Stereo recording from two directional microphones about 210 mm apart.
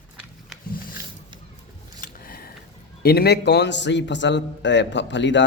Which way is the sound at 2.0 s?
45° left (ahead or behind).